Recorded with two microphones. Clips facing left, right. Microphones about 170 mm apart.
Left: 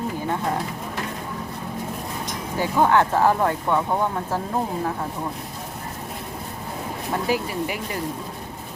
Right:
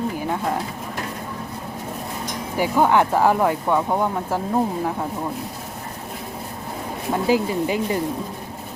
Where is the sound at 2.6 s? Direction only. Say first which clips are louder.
Right 1 dB; 10° right (ahead or behind).